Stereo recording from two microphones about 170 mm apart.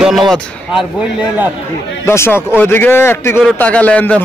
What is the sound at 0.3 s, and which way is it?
A man's voice, 5° right (ahead or behind).